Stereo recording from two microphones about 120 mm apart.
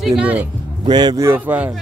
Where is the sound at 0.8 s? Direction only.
35° right (ahead or behind).